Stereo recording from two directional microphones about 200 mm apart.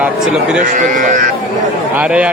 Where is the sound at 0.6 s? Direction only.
40° right (ahead or behind).